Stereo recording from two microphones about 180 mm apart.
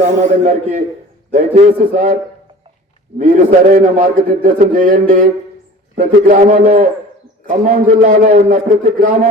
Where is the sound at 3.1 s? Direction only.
45° right (ahead or behind).